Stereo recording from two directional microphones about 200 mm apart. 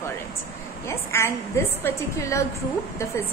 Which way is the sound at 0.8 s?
10° left (ahead or behind).